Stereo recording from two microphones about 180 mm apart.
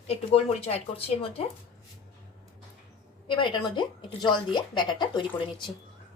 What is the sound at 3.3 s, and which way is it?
Speech, 25° left (ahead or behind).